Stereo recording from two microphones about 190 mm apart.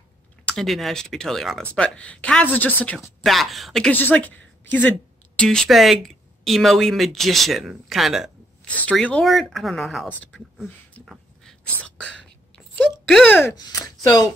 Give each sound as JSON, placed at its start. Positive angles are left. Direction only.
{"t": 0.5, "sound": "speech", "side_deg": 0}
{"t": 11.1, "sound": "whispering", "side_deg": 5}
{"t": 13.6, "sound": "speech", "side_deg": 20}